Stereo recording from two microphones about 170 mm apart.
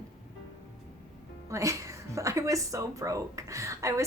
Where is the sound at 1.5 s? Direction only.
15° right (ahead or behind).